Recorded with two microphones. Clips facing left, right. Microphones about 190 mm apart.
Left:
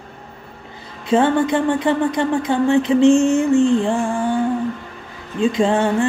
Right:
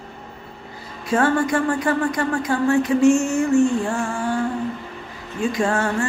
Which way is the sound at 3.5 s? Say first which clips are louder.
Left 3 dB; 15° left (ahead or behind).